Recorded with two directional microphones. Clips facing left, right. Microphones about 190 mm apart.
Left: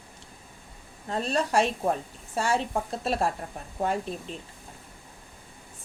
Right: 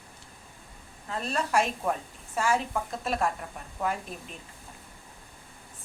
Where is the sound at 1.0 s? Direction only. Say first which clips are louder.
Left 4 dB; 35° left (ahead or behind).